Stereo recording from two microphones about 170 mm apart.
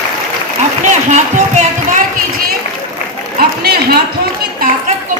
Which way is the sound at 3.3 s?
65° right (ahead or behind).